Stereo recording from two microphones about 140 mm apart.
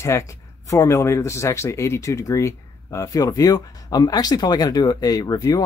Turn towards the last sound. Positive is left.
turn(degrees=25)  # may be behind; listen again after turning